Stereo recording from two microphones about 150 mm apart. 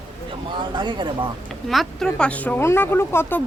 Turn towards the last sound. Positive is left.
turn(degrees=15)  # may be behind; listen again after turning